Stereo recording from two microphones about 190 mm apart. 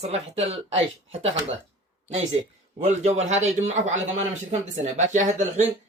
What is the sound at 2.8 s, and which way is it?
Speech, 35° right (ahead or behind).